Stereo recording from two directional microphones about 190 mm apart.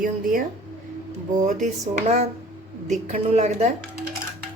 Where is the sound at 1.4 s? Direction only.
40° right (ahead or behind).